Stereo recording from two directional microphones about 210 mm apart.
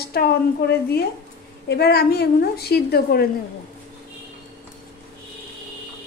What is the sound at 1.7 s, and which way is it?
A woman's voice, 50° left (ahead or behind).